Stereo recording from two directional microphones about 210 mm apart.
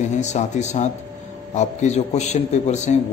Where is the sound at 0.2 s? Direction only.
35° left (ahead or behind).